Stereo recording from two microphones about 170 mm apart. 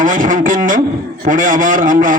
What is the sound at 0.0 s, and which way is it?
A man's voice, 50° right (ahead or behind).